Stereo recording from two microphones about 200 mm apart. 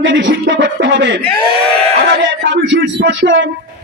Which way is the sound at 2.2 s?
60° right (ahead or behind).